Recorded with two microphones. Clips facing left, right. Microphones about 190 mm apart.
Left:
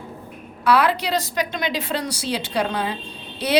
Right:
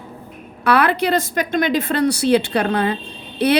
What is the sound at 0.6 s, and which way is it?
A woman's voice, 55° right (ahead or behind).